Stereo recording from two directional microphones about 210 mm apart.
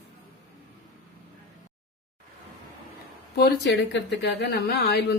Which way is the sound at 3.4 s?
50° left (ahead or behind).